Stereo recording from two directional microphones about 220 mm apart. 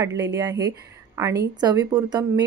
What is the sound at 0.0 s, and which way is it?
Speech, 15° right (ahead or behind).